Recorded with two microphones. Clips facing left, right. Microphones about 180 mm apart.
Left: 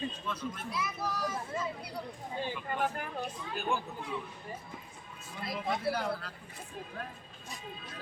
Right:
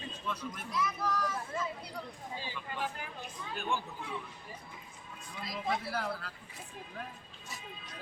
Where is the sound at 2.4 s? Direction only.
55° left (ahead or behind).